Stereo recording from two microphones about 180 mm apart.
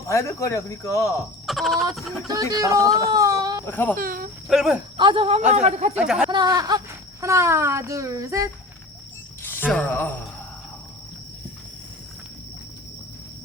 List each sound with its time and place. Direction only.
0.1 s speech: 15° left (ahead or behind)
1.5 s speech: centre (ahead or behind)
2.2 s music: 20° right (ahead or behind)
3.0 s a sound: 20° right (ahead or behind)
3.7 s speech: 10° left (ahead or behind)
3.9 s speech: 50° right (ahead or behind)
4.4 s speech: centre (ahead or behind)
4.9 s music: 30° right (ahead or behind)
5.5 s speech: 40° right (ahead or behind)
5.9 s speech: 5° right (ahead or behind)
6.3 s a child's voice: 20° right (ahead or behind)
9.4 s speech: 10° left (ahead or behind)